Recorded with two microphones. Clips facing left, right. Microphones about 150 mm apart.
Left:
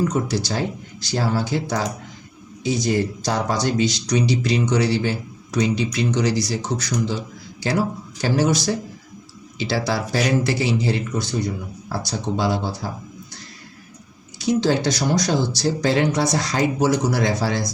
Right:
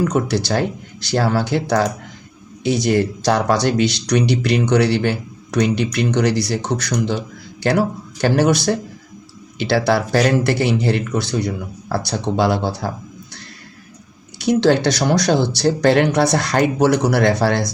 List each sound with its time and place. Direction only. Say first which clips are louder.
0.0 s speech: right 3 dB; 65° right (ahead or behind)
14.3 s speech: right 4 dB; 65° right (ahead or behind)